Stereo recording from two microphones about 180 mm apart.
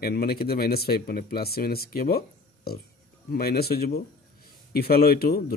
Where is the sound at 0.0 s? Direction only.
55° left (ahead or behind).